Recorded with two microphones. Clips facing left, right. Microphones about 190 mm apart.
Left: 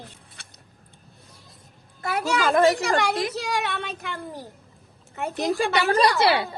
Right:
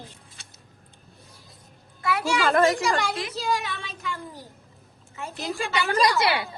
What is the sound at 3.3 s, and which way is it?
Speech, 70° left (ahead or behind).